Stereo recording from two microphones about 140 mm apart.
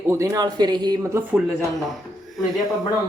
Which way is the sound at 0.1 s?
20° right (ahead or behind).